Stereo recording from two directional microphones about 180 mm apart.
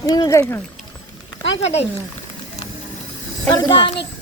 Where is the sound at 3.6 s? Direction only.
25° left (ahead or behind).